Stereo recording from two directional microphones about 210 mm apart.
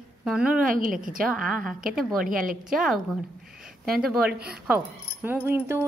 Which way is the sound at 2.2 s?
40° right (ahead or behind).